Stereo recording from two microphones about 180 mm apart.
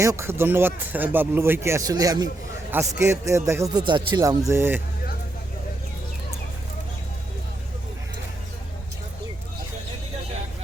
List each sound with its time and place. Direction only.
0.0 s speech: 15° right (ahead or behind)